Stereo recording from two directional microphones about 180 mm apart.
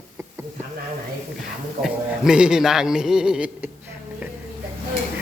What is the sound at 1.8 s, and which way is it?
A man's voice, 5° right (ahead or behind).